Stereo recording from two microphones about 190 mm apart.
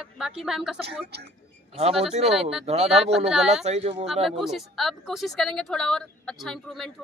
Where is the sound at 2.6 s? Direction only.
35° right (ahead or behind).